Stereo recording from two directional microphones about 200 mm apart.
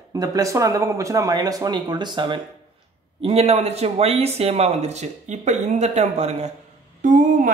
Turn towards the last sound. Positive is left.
turn(degrees=-40)  # may be behind; listen again after turning